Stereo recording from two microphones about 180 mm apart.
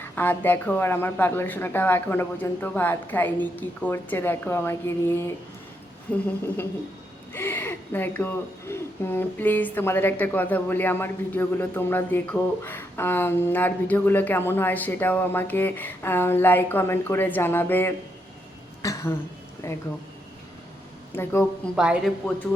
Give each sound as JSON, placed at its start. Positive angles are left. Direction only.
{"t": 0.0, "sound": "speech", "side_deg": 10}
{"t": 7.3, "sound": "speech", "side_deg": 10}
{"t": 18.8, "sound": "throat clearing", "side_deg": 15}
{"t": 19.6, "sound": "speech", "side_deg": 15}
{"t": 21.1, "sound": "a woman's voice", "side_deg": 10}
{"t": 21.8, "sound": "speech", "side_deg": -5}